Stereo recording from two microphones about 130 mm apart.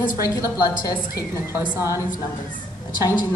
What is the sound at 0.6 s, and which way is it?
Speech, 25° left (ahead or behind).